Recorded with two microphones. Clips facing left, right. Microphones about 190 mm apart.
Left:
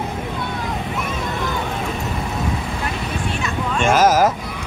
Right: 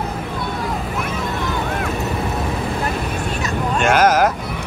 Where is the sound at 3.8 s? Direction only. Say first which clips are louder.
Even; centre (ahead or behind).